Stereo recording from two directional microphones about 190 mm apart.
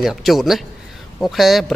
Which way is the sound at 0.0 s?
Centre (ahead or behind).